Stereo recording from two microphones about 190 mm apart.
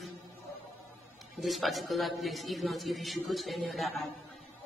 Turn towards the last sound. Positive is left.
turn(degrees=0)  # may be behind; listen again after turning